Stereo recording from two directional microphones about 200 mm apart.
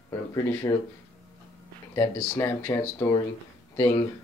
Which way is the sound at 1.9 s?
15° left (ahead or behind).